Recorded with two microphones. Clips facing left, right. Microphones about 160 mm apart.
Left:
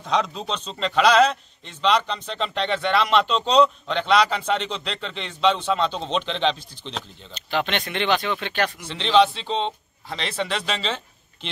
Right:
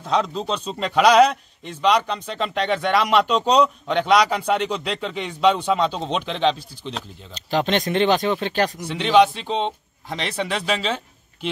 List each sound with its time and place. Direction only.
0.0 s a man's voice: centre (ahead or behind)
7.3 s speech: 35° right (ahead or behind)
8.8 s a man's voice: 10° right (ahead or behind)